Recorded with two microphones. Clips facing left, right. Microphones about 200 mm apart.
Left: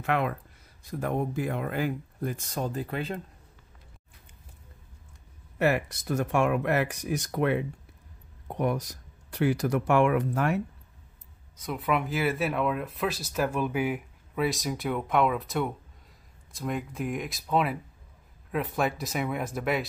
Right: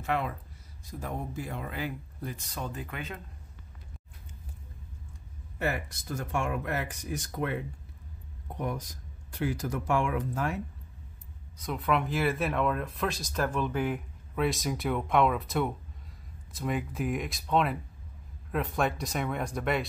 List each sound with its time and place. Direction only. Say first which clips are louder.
0.0 s speech: left 4 dB; 65° left (ahead or behind); by 3.2 s 35° left (ahead or behind)
5.6 s speech: left 7 dB; 70° left (ahead or behind)
11.6 s speech: left 1 dB; 5° left (ahead or behind)